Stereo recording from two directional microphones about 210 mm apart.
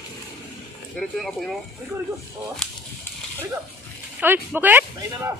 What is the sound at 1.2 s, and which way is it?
Speech, centre (ahead or behind).